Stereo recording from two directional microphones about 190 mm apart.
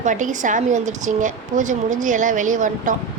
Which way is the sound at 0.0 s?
40° right (ahead or behind).